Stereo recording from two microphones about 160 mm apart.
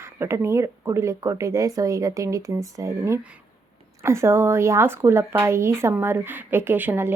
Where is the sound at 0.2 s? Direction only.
15° right (ahead or behind).